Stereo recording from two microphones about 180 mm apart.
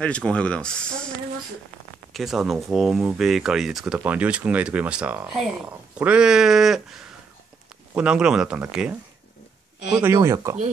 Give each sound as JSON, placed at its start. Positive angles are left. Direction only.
{"t": 0.0, "sound": "speech", "side_deg": 5}
{"t": 2.1, "sound": "speech", "side_deg": 0}
{"t": 9.9, "sound": "speech", "side_deg": -15}